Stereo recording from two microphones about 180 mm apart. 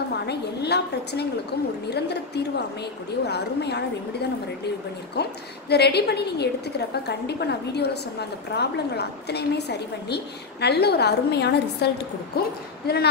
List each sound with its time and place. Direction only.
0.3 s a woman's voice: 65° left (ahead or behind)
5.1 s a woman's voice: 65° left (ahead or behind)